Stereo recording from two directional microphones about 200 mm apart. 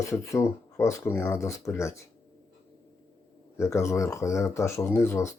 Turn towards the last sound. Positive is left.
turn(degrees=15)  # may be behind; listen again after turning